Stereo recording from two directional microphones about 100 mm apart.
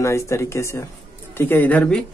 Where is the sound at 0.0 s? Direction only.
30° left (ahead or behind).